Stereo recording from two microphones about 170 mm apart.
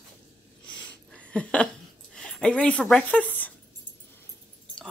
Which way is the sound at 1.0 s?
5° left (ahead or behind).